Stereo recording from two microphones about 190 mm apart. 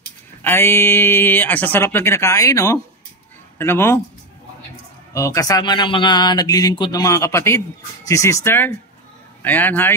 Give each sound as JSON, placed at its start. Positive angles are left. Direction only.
{"t": 0.4, "sound": "speech", "side_deg": 10}
{"t": 5.1, "sound": "speech", "side_deg": 15}